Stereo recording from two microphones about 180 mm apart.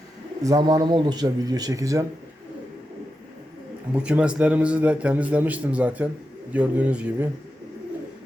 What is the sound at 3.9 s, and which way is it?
A man's voice, 5° right (ahead or behind).